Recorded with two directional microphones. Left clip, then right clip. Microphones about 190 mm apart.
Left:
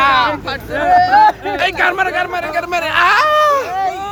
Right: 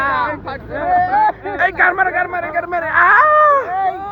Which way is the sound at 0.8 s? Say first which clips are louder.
Left 5 dB; 50° left (ahead or behind).